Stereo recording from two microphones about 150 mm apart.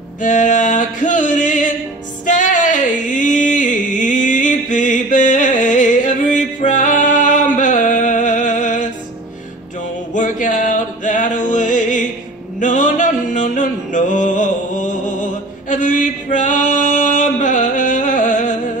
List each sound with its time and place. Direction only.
0.2 s music: 55° left (ahead or behind)
2.2 s a sound: 60° left (ahead or behind)
10.1 s music: 60° left (ahead or behind)
15.7 s male singing: 60° left (ahead or behind)